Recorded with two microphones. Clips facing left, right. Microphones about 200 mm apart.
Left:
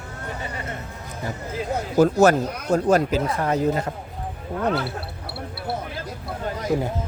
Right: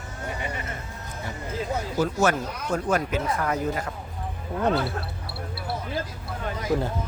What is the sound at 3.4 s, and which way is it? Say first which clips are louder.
Speech: left 5 dB; 25° left (ahead or behind).